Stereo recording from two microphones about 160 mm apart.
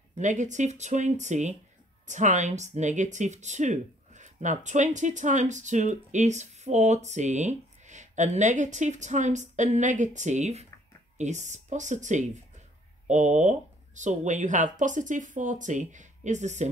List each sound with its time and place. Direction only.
0.2 s speech: 50° right (ahead or behind)